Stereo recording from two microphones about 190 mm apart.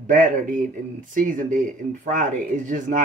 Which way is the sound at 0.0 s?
45° right (ahead or behind).